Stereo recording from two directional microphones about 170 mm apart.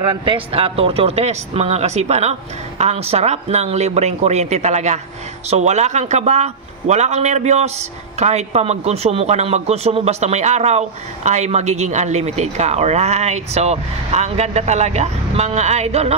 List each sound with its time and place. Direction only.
0.1 s a man's voice: 30° right (ahead or behind)